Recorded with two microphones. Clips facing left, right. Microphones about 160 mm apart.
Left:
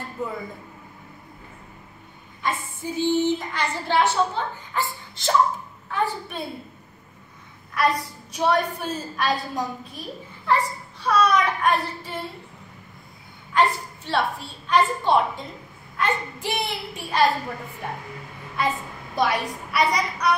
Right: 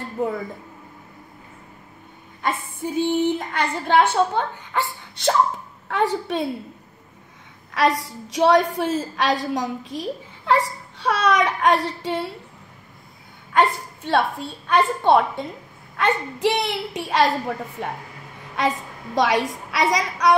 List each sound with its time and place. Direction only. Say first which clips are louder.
0.2 s a woman's voice: right 6 dB; 60° right (ahead or behind)
2.4 s a woman's voice: right 2 dB; 55° right (ahead or behind)
5.9 s a child's voice: right 5 dB; 80° right
7.7 s a woman's voice: right 3 dB; 90° right
13.5 s a woman's voice: right 2 dB; 55° right (ahead or behind)
16.0 s a child's voice: right 5 dB; 75° right (ahead or behind)